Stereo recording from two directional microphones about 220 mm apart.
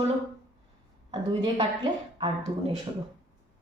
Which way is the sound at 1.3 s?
20° right (ahead or behind).